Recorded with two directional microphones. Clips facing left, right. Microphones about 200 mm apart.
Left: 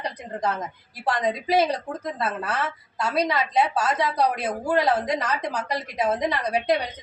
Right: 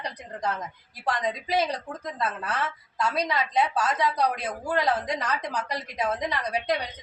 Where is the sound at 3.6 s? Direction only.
30° left (ahead or behind).